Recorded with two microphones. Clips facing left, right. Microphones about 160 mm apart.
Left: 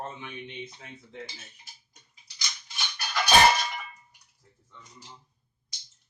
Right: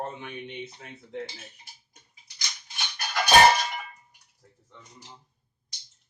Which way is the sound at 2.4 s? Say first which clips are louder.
Even; 50° right (ahead or behind).